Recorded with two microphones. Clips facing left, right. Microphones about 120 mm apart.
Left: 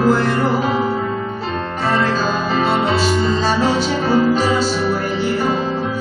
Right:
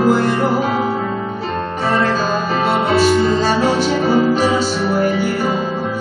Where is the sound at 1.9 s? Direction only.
5° right (ahead or behind).